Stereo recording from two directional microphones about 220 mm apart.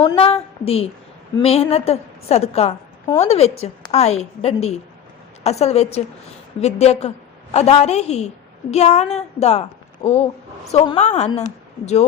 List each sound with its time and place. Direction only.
0.0 s a woman's voice: 25° left (ahead or behind)